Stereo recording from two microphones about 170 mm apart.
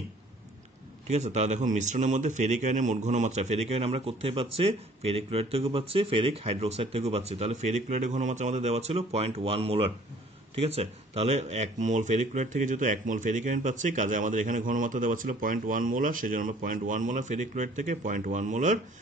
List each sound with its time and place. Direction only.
1.0 s speech: 40° right (ahead or behind)